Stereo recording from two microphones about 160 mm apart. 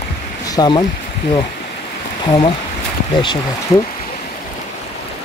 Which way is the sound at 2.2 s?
30° left (ahead or behind).